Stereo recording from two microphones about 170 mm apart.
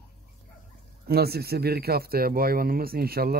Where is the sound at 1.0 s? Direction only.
65° right (ahead or behind).